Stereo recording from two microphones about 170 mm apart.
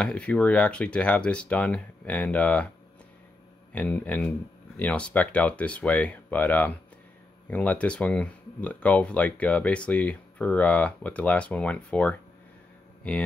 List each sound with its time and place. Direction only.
0.0 s speech: 5° left (ahead or behind)
3.7 s speech: 10° left (ahead or behind)